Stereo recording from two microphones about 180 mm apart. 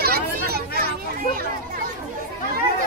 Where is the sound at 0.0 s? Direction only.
60° right (ahead or behind).